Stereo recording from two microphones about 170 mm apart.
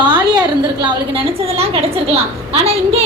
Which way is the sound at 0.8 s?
30° right (ahead or behind).